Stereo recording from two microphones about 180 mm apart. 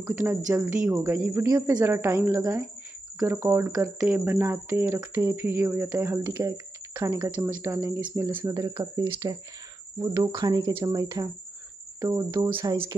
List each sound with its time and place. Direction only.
0.0 s speech: 10° right (ahead or behind)
12.5 s speech: 30° right (ahead or behind)